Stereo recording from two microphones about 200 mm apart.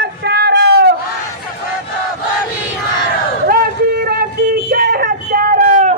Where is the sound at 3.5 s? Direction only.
50° right (ahead or behind).